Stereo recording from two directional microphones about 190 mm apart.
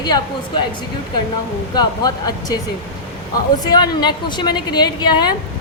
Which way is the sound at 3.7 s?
20° left (ahead or behind).